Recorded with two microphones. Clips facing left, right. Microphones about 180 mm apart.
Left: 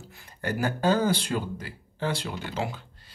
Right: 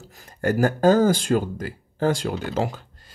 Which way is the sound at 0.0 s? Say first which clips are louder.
Right 9 dB; 40° right (ahead or behind).